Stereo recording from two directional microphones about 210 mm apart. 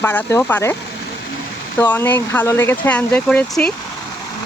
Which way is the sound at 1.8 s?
10° left (ahead or behind).